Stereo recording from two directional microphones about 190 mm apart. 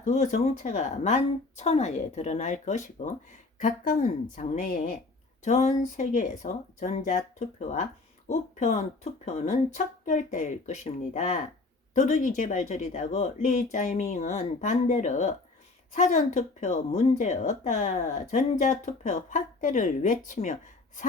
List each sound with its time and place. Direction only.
0.0 s speech: 40° left (ahead or behind)